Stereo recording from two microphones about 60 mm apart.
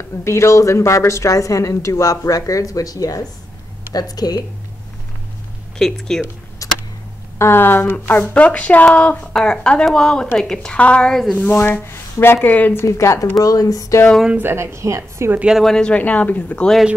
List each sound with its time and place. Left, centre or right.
0.2 s a woman's voice: left
3.9 s speech: left
5.8 s a woman's voice: centre
6.6 s a sound: left
7.3 s a woman's voice: left; by 11.1 s centre
11.1 s speech: centre
11.6 s speech: left
12.8 s a woman's voice: left
13.4 s speech: left
14.4 s a woman's voice: right
15.6 s a woman's voice: centre
15.9 s speech: left